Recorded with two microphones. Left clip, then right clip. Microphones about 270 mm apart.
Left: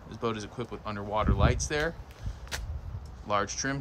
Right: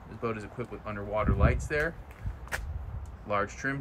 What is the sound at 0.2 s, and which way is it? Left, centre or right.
Speech, centre.